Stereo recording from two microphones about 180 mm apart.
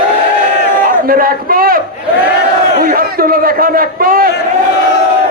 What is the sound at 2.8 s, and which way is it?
A man's voice, 55° right (ahead or behind).